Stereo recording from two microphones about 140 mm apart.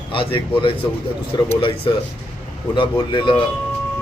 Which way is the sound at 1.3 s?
30° left (ahead or behind).